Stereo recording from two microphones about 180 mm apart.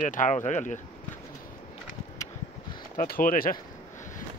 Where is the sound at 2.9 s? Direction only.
50° left (ahead or behind).